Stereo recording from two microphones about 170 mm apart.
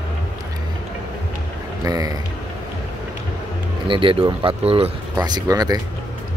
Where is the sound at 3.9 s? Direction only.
30° right (ahead or behind).